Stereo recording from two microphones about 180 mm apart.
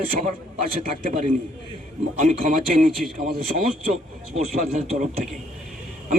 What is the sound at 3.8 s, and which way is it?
A man's voice, 40° right (ahead or behind).